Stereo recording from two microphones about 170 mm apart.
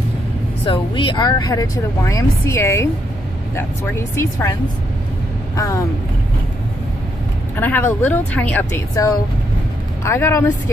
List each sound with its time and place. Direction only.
0.7 s a woman's voice: 30° left (ahead or behind)
5.6 s a woman's voice: 20° left (ahead or behind)
7.5 s speech: 10° left (ahead or behind)